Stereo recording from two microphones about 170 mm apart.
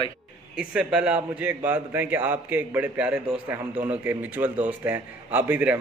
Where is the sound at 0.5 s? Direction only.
5° right (ahead or behind).